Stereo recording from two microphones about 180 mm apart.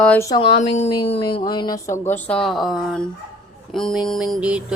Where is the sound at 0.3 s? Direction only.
30° left (ahead or behind); by 3.1 s centre (ahead or behind).